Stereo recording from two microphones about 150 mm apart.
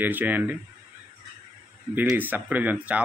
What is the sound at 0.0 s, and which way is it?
Speech, 10° right (ahead or behind).